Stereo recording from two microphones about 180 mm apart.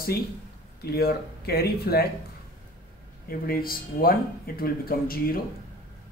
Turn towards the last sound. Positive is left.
turn(degrees=55)  # may be behind; listen again after turning